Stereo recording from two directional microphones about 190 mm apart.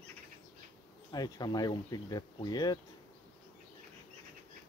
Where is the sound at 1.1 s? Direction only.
20° left (ahead or behind).